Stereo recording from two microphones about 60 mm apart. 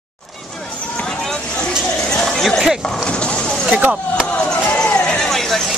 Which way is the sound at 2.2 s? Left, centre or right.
Centre.